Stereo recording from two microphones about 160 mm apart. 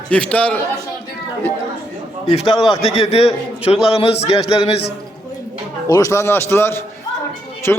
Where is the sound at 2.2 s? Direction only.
35° left (ahead or behind).